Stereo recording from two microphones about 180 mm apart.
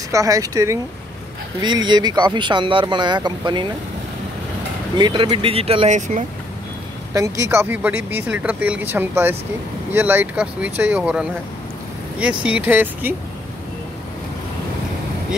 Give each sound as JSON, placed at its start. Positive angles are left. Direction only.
{"t": 0.1, "sound": "speech", "side_deg": -20}
{"t": 4.9, "sound": "speech", "side_deg": -25}
{"t": 7.2, "sound": "speech", "side_deg": -20}
{"t": 12.4, "sound": "speech", "side_deg": -10}